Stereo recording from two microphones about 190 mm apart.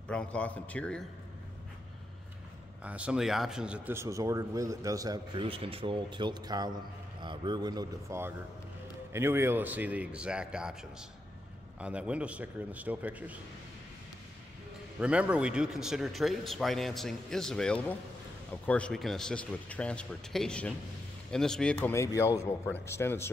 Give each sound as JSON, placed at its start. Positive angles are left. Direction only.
{"t": 0.1, "sound": "speech", "side_deg": 5}
{"t": 2.8, "sound": "a man's voice", "side_deg": -5}
{"t": 15.0, "sound": "a man's voice", "side_deg": -5}